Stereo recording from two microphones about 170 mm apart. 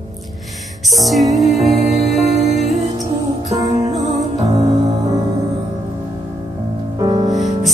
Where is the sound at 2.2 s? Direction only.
40° right (ahead or behind).